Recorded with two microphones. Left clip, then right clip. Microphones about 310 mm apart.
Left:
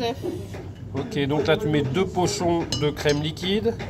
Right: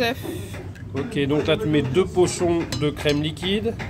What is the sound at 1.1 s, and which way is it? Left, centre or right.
Speech, centre.